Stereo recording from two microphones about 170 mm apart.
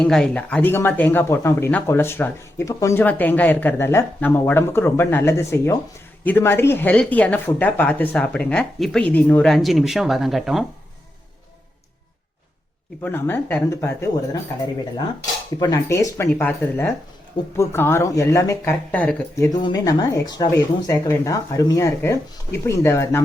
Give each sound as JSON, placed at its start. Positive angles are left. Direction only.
{"t": 0.0, "sound": "speech", "side_deg": 5}
{"t": 13.0, "sound": "speech", "side_deg": 10}
{"t": 15.6, "sound": "speech", "side_deg": 20}
{"t": 19.5, "sound": "speech", "side_deg": 25}